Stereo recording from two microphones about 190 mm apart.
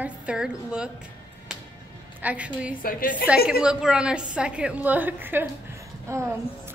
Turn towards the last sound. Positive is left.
turn(degrees=-15)  # may be behind; listen again after turning